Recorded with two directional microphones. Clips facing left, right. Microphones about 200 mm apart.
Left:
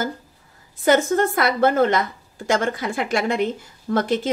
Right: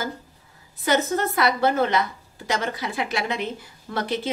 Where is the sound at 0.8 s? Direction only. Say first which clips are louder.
Left 5 dB; 50° left (ahead or behind).